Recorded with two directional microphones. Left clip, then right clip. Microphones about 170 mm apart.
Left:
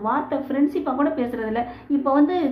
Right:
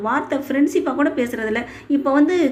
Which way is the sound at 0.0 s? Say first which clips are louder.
Right 2 dB; 15° right (ahead or behind).